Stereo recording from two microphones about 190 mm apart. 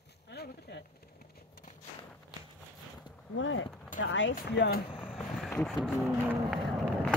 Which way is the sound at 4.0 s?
75° left (ahead or behind).